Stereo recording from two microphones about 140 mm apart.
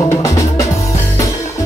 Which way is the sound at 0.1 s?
20° left (ahead or behind).